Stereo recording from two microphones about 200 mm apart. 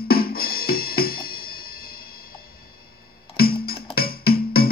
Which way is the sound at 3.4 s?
50° left (ahead or behind).